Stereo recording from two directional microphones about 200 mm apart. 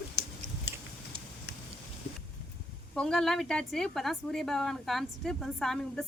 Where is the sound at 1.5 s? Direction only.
55° left (ahead or behind).